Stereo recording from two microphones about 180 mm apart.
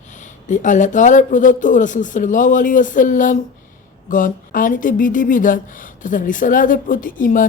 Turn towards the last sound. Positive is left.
turn(degrees=50)  # may be behind; listen again after turning